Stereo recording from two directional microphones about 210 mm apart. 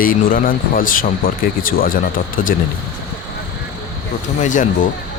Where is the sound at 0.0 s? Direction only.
40° left (ahead or behind).